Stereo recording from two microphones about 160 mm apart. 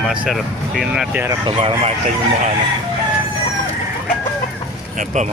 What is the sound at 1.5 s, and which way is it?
Chicken, 35° right (ahead or behind).